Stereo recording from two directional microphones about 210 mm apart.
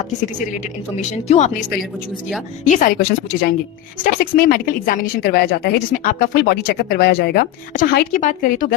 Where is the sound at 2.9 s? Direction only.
50° left (ahead or behind).